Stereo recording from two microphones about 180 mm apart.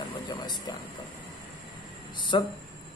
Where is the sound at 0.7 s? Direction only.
20° left (ahead or behind).